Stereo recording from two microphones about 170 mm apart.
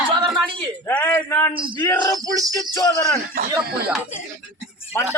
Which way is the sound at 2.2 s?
20° right (ahead or behind).